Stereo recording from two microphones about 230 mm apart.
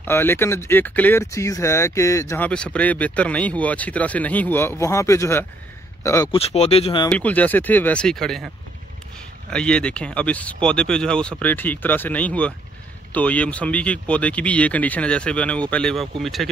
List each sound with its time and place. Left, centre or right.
0.0 s speech: centre
6.3 s speech: left
7.1 s speech: centre
9.5 s speech: centre